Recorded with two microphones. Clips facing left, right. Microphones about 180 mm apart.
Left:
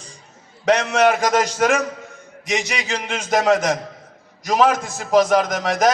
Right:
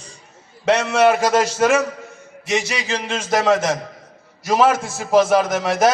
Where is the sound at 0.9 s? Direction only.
Centre (ahead or behind).